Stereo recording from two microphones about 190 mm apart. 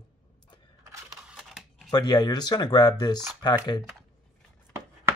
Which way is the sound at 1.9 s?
20° left (ahead or behind).